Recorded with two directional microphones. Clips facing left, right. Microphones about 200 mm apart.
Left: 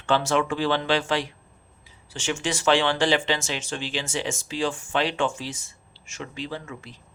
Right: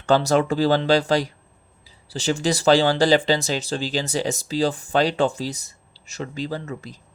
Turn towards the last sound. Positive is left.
turn(degrees=-40)  # may be behind; listen again after turning